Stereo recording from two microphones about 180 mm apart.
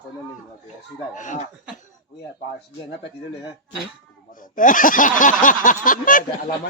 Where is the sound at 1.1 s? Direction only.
45° left (ahead or behind).